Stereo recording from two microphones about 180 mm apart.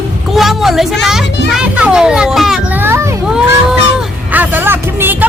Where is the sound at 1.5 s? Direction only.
5° right (ahead or behind).